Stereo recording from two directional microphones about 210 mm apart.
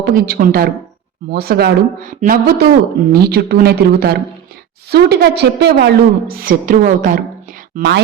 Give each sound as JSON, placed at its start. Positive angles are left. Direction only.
{"t": 0.0, "sound": "a woman's voice", "side_deg": -45}
{"t": 7.8, "sound": "a woman's voice", "side_deg": -55}